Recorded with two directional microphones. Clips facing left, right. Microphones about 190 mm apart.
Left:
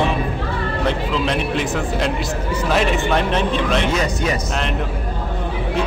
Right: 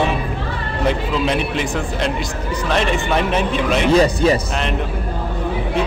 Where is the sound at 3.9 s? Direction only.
30° right (ahead or behind).